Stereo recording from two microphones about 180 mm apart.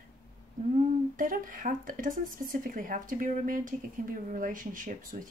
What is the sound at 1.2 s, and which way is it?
Speech, 50° right (ahead or behind).